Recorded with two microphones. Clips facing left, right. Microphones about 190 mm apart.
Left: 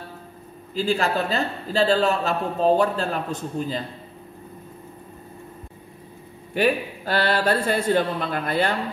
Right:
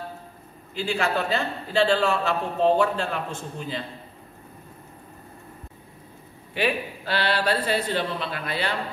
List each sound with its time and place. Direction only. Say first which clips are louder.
0.7 s a man's voice: left 3 dB; 35° left (ahead or behind)
6.5 s speech: left 4 dB; 45° left (ahead or behind)